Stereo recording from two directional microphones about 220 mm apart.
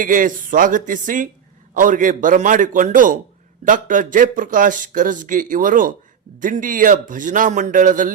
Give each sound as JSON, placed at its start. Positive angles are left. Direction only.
{"t": 0.0, "sound": "speech", "side_deg": -35}